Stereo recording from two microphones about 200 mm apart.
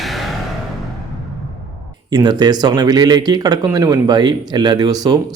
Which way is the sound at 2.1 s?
20° right (ahead or behind).